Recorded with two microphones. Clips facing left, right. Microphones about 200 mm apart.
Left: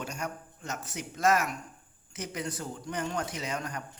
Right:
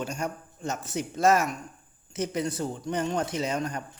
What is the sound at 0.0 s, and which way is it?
A man's voice, 30° right (ahead or behind).